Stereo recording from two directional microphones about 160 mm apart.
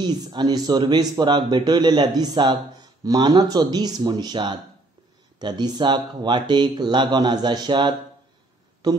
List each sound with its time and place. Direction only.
0.0 s speech: 25° right (ahead or behind)